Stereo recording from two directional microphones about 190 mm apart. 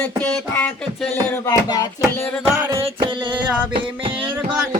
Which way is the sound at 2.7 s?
25° right (ahead or behind).